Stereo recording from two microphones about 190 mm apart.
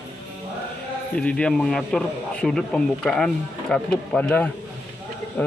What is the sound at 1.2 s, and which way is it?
Speech, 5° left (ahead or behind).